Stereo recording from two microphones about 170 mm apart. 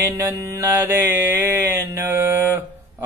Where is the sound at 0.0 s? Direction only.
15° right (ahead or behind).